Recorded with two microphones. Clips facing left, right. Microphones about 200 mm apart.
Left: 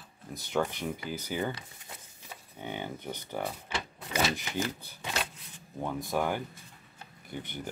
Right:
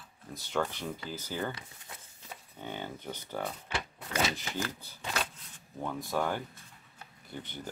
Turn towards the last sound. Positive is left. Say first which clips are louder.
# left 3 dB
turn(degrees=15)  # may be behind; listen again after turning